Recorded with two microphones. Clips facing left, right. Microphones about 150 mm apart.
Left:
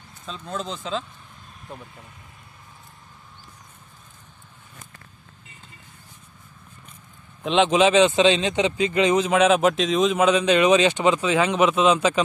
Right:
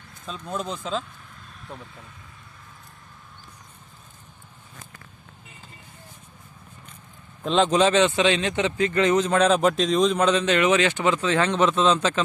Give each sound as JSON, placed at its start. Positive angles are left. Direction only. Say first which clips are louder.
{"t": 0.3, "sound": "speech", "louder": "right 1 dB", "side_deg": -10}
{"t": 7.5, "sound": "speech", "louder": "left 2 dB", "side_deg": 5}